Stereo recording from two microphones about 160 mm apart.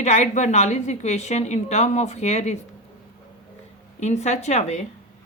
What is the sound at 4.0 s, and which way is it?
Speech, 45° left (ahead or behind).